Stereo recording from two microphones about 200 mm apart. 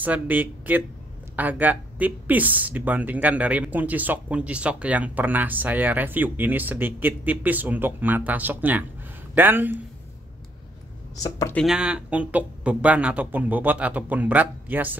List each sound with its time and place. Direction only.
0.0 s speech: 10° right (ahead or behind)
11.2 s speech: 15° left (ahead or behind)
11.5 s speech: centre (ahead or behind)